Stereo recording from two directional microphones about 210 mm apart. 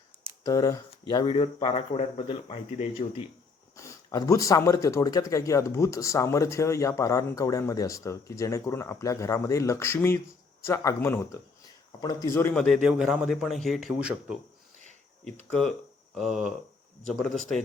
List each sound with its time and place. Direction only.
0.4 s speech: 15° left (ahead or behind)
3.8 s a man's voice: 15° left (ahead or behind); by 14.3 s centre (ahead or behind)
15.4 s a man's voice: 5° left (ahead or behind)